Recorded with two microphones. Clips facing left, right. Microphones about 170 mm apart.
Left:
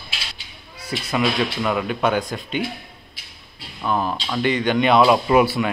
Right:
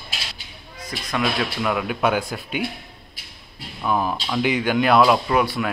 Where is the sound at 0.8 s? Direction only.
5° left (ahead or behind).